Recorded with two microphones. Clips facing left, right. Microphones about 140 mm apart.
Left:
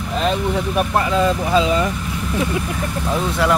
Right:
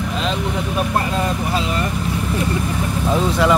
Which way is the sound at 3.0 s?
Centre (ahead or behind).